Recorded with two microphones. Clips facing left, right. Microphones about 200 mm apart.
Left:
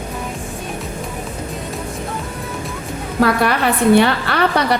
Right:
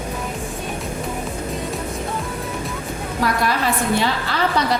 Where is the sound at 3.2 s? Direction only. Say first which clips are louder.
Left 5 dB; 65° left (ahead or behind).